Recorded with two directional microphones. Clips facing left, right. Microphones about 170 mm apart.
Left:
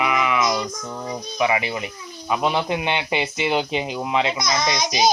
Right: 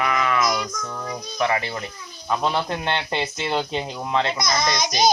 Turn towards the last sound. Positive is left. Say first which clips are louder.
# even
turn(degrees=5)  # may be behind; listen again after turning